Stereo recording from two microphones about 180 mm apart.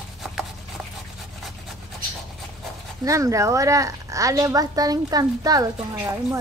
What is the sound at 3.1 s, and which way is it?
A woman's voice, 15° right (ahead or behind).